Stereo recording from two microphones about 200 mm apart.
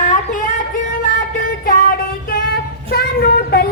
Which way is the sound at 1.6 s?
45° left (ahead or behind).